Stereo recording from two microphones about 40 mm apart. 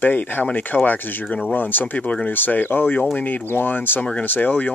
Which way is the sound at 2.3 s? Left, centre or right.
Left.